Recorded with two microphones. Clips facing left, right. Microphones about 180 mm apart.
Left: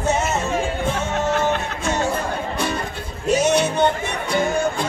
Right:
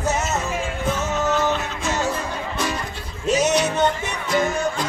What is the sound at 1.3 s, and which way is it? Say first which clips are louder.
Music: left 1 dB; 55° left (ahead or behind).